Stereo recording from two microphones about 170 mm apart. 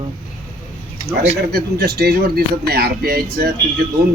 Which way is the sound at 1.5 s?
70° right (ahead or behind).